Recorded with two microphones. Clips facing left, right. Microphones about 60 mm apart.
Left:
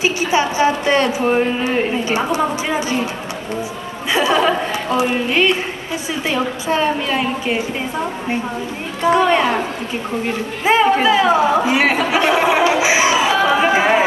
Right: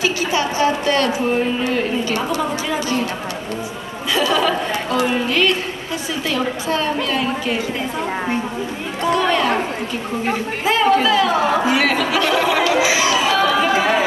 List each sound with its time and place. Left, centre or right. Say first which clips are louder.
0.0 s a woman's voice: left 2 dB; left
4.1 s a woman's voice: left 2 dB; left
9.0 s a woman's voice: left 3 dB; left
10.6 s a woman's voice: left 2 dB; left
12.8 s chatter: left 2 dB; left